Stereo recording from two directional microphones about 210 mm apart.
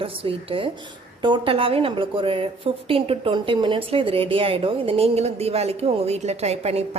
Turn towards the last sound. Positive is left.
turn(degrees=-30)  # may be behind; listen again after turning